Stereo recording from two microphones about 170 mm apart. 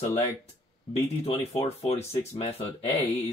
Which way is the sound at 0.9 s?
35° left (ahead or behind).